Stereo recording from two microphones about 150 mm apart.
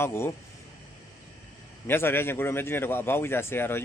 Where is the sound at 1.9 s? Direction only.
15° left (ahead or behind).